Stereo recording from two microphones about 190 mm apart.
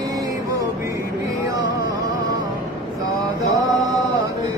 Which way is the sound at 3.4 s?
20° right (ahead or behind).